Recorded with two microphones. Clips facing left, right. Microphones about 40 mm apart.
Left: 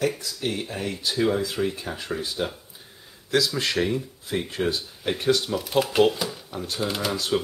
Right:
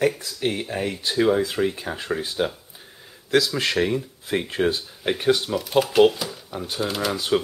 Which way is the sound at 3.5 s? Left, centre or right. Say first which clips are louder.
Right 2 dB; right.